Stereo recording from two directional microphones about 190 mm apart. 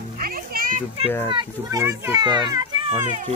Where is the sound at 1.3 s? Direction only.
20° right (ahead or behind).